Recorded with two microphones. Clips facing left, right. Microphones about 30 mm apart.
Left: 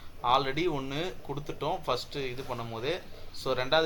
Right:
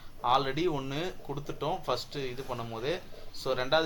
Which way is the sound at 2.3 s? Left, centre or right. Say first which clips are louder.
Left 1 dB; left.